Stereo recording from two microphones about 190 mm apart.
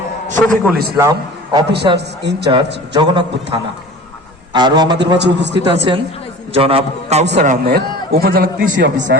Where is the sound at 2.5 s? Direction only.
25° right (ahead or behind).